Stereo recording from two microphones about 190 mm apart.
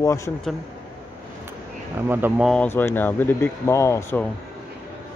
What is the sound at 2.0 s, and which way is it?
Speech, 10° right (ahead or behind).